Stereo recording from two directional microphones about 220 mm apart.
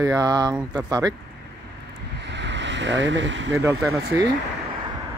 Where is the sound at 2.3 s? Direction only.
55° right (ahead or behind).